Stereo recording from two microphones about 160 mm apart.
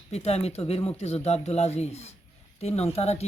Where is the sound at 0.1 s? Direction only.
40° left (ahead or behind).